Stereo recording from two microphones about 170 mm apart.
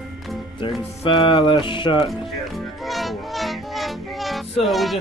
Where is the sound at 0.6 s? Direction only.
30° left (ahead or behind).